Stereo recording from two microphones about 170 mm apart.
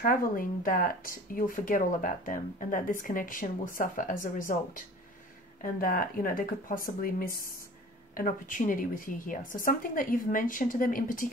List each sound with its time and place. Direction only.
0.0 s speech: 55° left (ahead or behind)